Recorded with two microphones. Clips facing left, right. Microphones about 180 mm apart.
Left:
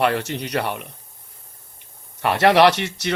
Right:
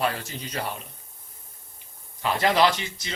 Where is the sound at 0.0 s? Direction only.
70° left (ahead or behind).